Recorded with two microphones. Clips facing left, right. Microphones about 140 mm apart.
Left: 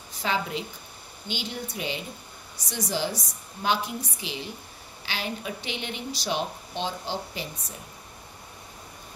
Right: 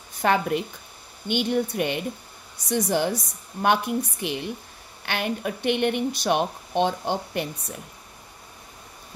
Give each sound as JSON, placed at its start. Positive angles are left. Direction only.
{"t": 0.1, "sound": "a woman's voice", "side_deg": -55}